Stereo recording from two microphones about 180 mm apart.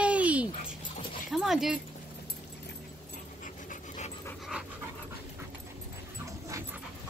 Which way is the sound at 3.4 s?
45° left (ahead or behind).